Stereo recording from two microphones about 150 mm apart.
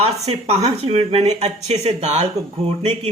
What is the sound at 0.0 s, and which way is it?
Speech, 45° right (ahead or behind).